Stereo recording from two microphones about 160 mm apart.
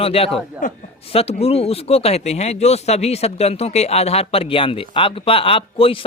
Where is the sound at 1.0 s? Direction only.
40° left (ahead or behind).